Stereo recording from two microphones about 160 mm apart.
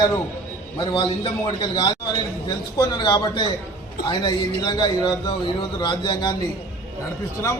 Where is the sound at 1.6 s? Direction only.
30° left (ahead or behind).